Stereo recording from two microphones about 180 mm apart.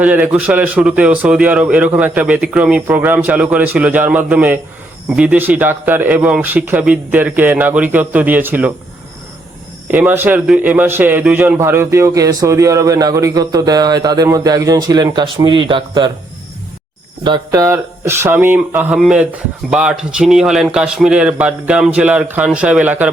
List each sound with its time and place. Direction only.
0.0 s a man's voice: 10° right (ahead or behind)
9.9 s a man's voice: 10° right (ahead or behind)
17.2 s a man's voice: 20° right (ahead or behind)